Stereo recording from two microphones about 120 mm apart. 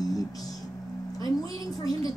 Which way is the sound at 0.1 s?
30° left (ahead or behind).